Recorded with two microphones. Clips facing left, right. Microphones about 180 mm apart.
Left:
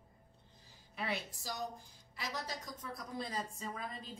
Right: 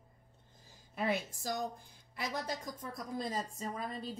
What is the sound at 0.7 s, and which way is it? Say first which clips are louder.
A woman's voice: right 6 dB; 45° right (ahead or behind).